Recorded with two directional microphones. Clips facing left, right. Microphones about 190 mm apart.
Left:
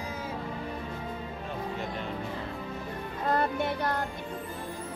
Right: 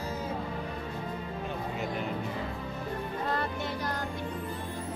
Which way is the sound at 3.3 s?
55° left (ahead or behind).